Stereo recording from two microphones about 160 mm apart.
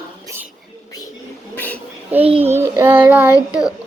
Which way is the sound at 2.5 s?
15° right (ahead or behind).